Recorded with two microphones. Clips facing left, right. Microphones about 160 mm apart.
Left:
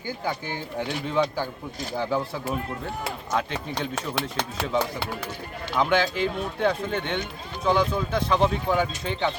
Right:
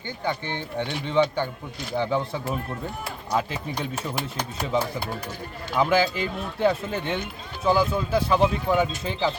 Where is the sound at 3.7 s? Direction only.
90° left.